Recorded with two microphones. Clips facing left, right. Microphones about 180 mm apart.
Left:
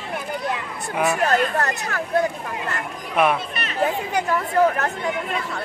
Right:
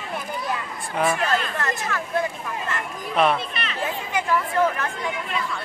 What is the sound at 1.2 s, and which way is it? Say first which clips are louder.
Speech: left 5 dB; 40° left (ahead or behind).